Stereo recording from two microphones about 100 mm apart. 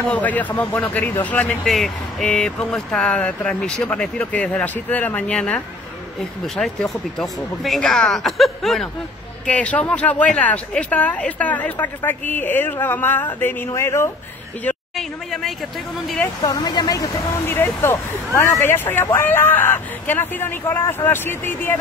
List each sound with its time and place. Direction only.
0.1 s speech: 15° left (ahead or behind)
1.7 s speech: centre (ahead or behind)
9.5 s speech: 15° left (ahead or behind)
13.7 s speech: 30° left (ahead or behind)
15.0 s speech: 5° left (ahead or behind)
16.4 s speech: 40° left (ahead or behind)
17.8 s speech: 25° left (ahead or behind)